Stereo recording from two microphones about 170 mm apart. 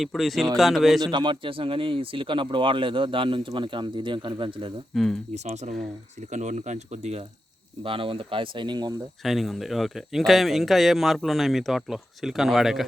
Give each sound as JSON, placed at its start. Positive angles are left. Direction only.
{"t": 0.0, "sound": "speech", "side_deg": 0}
{"t": 1.0, "sound": "a man's voice", "side_deg": -25}
{"t": 4.9, "sound": "speech", "side_deg": 0}
{"t": 5.3, "sound": "speech", "side_deg": -40}
{"t": 9.2, "sound": "speech", "side_deg": 0}